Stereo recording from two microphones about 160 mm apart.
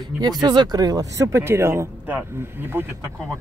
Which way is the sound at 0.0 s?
25° right (ahead or behind).